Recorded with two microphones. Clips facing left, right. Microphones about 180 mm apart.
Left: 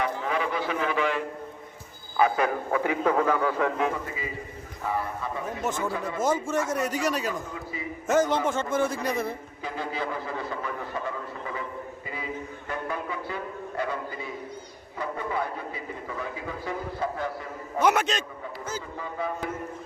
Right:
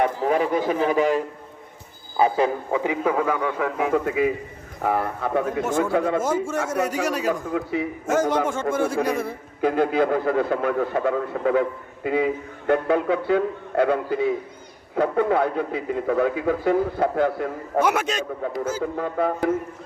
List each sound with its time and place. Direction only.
0.2 s a man's voice: 45° right (ahead or behind)
2.1 s speech: 30° right (ahead or behind)
2.8 s a man's voice: 15° right (ahead or behind)
3.9 s a man's voice: 65° right (ahead or behind)
6.2 s a man's voice: 10° right (ahead or behind)
7.3 s a man's voice: 70° right (ahead or behind)
8.0 s a man's voice: 10° right (ahead or behind)
9.6 s a man's voice: 55° right (ahead or behind)
17.7 s a man's voice: 10° right (ahead or behind)
18.8 s a man's voice: 65° right (ahead or behind)